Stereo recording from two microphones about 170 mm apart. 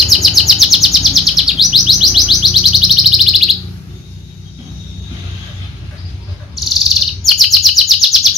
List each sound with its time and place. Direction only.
0.0 s bird: centre (ahead or behind)
6.5 s chirp: centre (ahead or behind)